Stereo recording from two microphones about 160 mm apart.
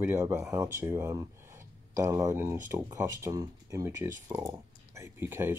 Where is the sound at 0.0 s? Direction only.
15° right (ahead or behind).